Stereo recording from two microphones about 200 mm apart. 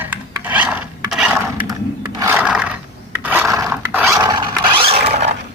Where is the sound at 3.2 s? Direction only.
10° right (ahead or behind).